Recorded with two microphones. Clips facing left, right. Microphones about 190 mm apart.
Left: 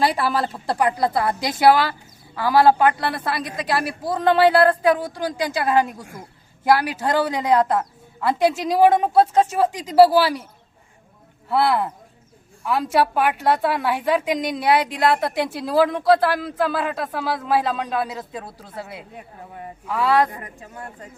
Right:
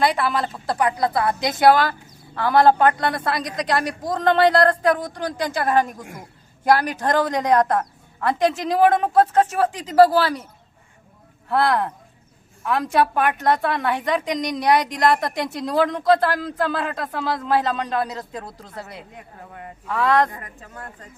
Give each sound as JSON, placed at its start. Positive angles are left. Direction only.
{"t": 0.0, "sound": "a woman's voice", "side_deg": 35}
{"t": 1.4, "sound": "a woman's voice", "side_deg": 10}
{"t": 11.4, "sound": "a woman's voice", "side_deg": 5}